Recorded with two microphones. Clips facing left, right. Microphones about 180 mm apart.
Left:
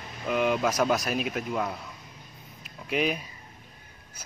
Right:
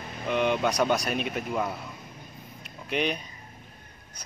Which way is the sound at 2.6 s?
5° left (ahead or behind).